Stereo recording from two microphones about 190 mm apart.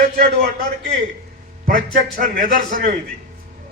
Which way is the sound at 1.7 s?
45° right (ahead or behind).